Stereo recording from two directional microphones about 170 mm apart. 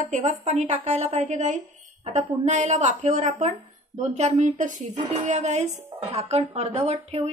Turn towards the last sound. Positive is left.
turn(degrees=-40)  # may be behind; listen again after turning